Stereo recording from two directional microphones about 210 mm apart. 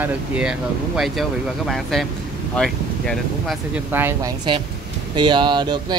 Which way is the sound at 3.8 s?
10° right (ahead or behind).